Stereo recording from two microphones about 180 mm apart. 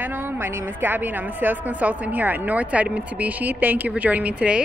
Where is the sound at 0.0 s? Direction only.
10° right (ahead or behind).